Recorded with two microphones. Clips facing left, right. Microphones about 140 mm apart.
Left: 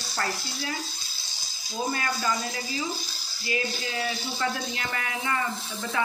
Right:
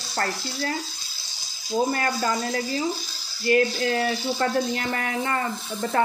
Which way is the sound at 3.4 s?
60° right (ahead or behind).